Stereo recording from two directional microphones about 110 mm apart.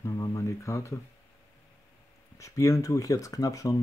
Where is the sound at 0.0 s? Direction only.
30° left (ahead or behind).